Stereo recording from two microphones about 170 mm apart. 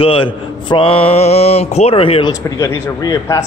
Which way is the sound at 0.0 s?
30° left (ahead or behind).